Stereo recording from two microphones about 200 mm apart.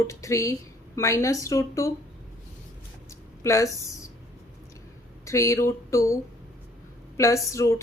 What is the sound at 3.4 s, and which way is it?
Speech, 15° left (ahead or behind).